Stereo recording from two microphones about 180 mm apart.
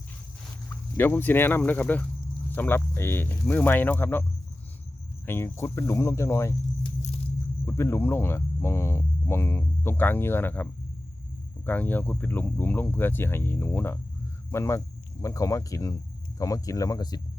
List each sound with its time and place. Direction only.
0.9 s cricket: 10° left (ahead or behind)
7.6 s cricket: 15° left (ahead or behind)
16.4 s speech: 20° left (ahead or behind)